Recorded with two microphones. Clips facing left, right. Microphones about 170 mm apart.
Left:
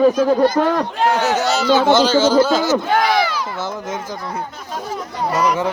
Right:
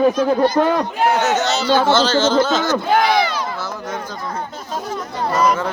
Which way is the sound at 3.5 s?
25° left (ahead or behind).